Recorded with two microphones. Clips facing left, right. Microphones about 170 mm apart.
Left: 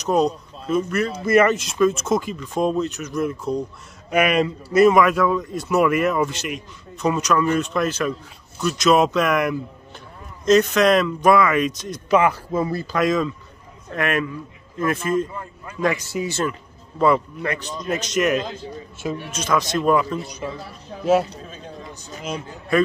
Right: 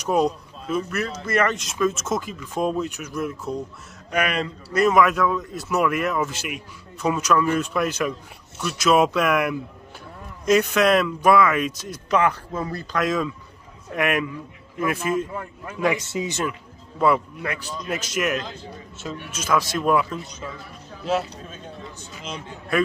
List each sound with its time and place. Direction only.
0.0 s speech: 10° right (ahead or behind)
1.2 s speech: 10° left (ahead or behind)
4.1 s speech: 10° left (ahead or behind); by 12.0 s 5° right (ahead or behind)
12.1 s speech: 5° left (ahead or behind)
13.8 s speech: 15° right (ahead or behind)
16.1 s speech: 20° right (ahead or behind)
17.0 s speech: 5° right (ahead or behind)
20.4 s a man's voice: 40° left (ahead or behind)